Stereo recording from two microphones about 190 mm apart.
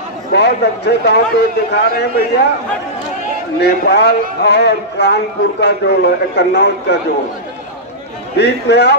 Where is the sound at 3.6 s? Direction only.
60° left (ahead or behind).